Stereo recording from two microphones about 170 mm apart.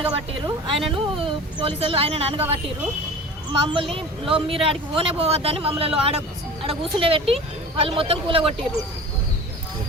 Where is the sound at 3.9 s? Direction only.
30° right (ahead or behind).